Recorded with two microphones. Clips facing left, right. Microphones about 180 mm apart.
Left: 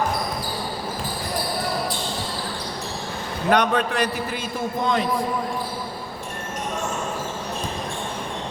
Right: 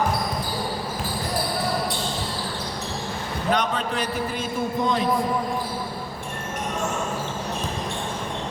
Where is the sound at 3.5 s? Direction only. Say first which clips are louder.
Left 5 dB; 70° left (ahead or behind).